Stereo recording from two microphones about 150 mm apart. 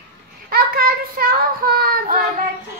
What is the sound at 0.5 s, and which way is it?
Child singing, 80° right.